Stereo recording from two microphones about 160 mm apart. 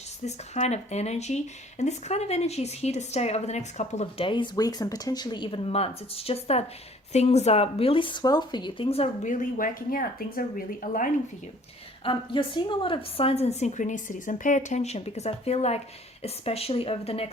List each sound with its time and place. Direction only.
0.3 s a woman's voice: 45° left (ahead or behind); by 10.4 s 65° left (ahead or behind)
12.0 s a woman's voice: 30° left (ahead or behind)